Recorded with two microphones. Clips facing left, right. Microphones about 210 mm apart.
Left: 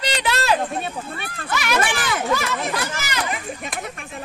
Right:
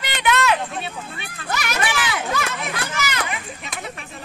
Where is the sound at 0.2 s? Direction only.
35° left (ahead or behind).